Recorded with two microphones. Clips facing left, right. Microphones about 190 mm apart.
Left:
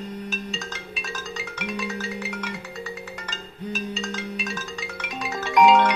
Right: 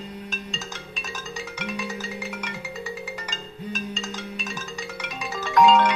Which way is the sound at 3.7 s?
5° left (ahead or behind).